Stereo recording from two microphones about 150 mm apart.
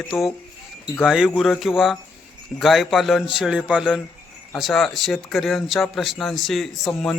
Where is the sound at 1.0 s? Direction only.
5° right (ahead or behind).